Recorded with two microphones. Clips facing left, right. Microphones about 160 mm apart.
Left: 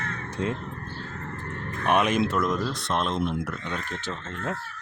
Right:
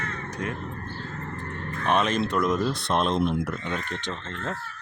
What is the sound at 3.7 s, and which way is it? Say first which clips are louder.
Speech: right 1 dB; 5° left (ahead or behind).